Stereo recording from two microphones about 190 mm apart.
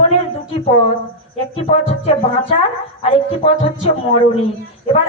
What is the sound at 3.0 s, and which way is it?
Speech, 30° left (ahead or behind).